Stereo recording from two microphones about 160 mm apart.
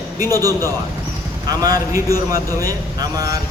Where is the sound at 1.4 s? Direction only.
20° right (ahead or behind).